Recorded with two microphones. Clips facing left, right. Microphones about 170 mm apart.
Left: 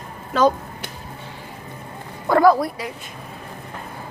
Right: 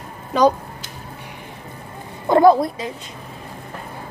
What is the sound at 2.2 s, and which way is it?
Speech, 25° right (ahead or behind).